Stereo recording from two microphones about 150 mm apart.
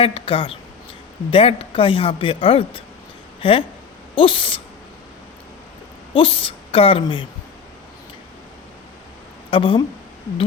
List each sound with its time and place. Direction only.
0.0 s speech: 40° left (ahead or behind)
6.1 s a woman's voice: 35° left (ahead or behind)
9.5 s speech: 35° left (ahead or behind)